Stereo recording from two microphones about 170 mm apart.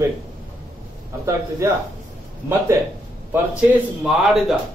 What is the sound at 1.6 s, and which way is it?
Speech, 15° right (ahead or behind).